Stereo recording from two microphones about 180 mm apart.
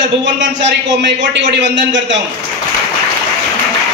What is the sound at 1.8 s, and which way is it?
Speech, 90° right.